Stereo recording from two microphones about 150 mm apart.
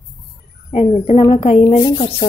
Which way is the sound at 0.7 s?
45° left (ahead or behind).